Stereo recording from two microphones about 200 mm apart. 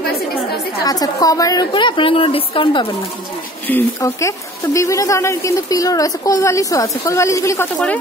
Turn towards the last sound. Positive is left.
turn(degrees=10)  # may be behind; listen again after turning